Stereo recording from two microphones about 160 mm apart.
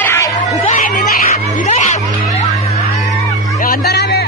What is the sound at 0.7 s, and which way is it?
Cat, 55° left (ahead or behind).